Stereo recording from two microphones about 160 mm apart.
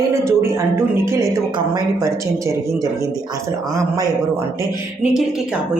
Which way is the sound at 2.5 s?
20° right (ahead or behind).